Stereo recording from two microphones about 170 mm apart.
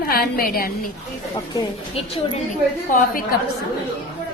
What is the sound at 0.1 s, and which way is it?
Speech, 65° left (ahead or behind).